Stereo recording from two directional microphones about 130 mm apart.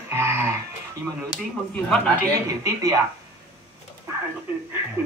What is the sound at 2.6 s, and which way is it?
Speech, 25° right (ahead or behind).